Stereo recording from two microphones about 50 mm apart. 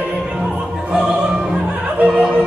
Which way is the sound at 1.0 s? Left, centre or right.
Centre.